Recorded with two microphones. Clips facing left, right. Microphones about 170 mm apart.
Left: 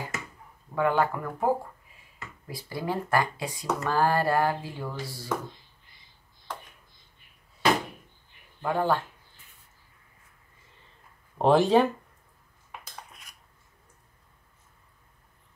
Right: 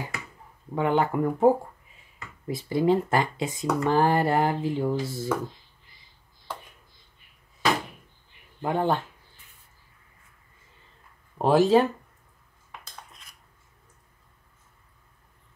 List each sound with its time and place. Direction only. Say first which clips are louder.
0.7 s speech: right 2 dB; 20° right (ahead or behind)
8.6 s speech: right 1 dB; 20° right (ahead or behind)
11.3 s speech: right 1 dB; centre (ahead or behind)